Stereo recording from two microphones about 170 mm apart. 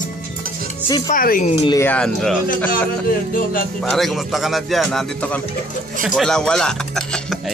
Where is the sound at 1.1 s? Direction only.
55° left (ahead or behind).